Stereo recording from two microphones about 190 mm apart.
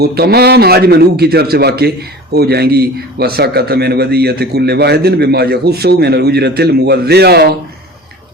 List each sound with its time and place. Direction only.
0.0 s a man's voice: 55° right (ahead or behind)